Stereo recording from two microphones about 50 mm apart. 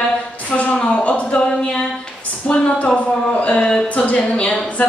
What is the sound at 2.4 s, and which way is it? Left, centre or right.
A woman's voice, left.